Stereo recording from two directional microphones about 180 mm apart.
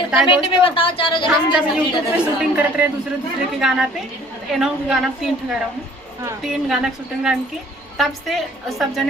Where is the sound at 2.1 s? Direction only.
5° right (ahead or behind).